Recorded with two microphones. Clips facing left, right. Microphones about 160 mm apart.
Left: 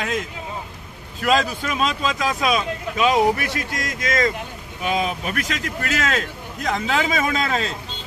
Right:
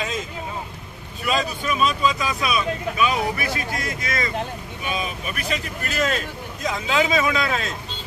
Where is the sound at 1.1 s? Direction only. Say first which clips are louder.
Left 4 dB; 90° left.